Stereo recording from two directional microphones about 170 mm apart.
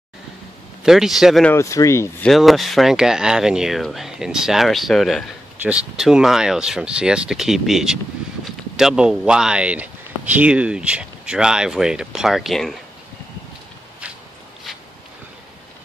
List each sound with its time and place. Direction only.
0.8 s speech: 5° right (ahead or behind)
1.5 s speech: 20° left (ahead or behind)
2.2 s speech: centre (ahead or behind)